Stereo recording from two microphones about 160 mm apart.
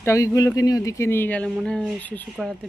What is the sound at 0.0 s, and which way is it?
Speech, 20° left (ahead or behind).